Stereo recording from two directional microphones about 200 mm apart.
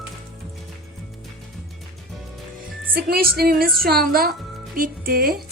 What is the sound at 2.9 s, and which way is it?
A woman's voice, 50° right (ahead or behind).